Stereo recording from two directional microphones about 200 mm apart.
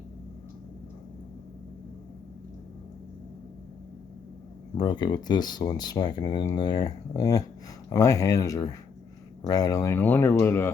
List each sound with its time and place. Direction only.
4.8 s speech: 20° left (ahead or behind)